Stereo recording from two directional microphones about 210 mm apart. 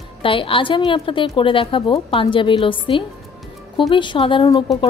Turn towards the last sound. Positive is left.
turn(degrees=20)  # may be behind; listen again after turning